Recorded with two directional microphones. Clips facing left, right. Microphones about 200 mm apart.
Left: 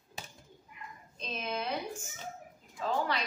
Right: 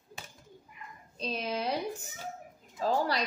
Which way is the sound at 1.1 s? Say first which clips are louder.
Right 3 dB; 35° right (ahead or behind).